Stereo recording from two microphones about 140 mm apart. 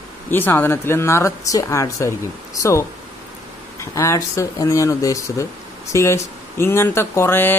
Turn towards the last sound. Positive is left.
turn(degrees=15)  # may be behind; listen again after turning